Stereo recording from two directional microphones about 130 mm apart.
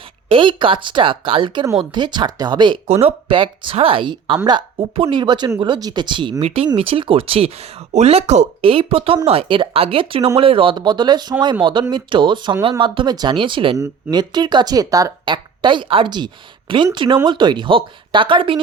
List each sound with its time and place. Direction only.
0.3 s speech: 40° right (ahead or behind)
6.4 s speech: 50° right (ahead or behind)
13.7 s speech: 30° right (ahead or behind)